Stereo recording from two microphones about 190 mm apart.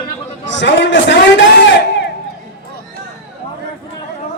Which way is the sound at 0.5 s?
70° left (ahead or behind).